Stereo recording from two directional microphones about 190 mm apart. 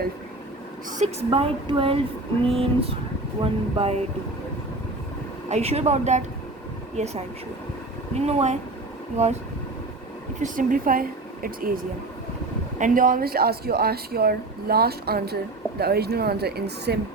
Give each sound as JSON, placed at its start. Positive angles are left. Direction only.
{"t": 0.9, "sound": "a woman's voice", "side_deg": -40}
{"t": 5.5, "sound": "speech", "side_deg": -35}
{"t": 10.4, "sound": "speech", "side_deg": -45}